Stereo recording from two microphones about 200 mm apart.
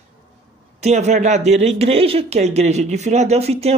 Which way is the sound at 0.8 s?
35° right (ahead or behind).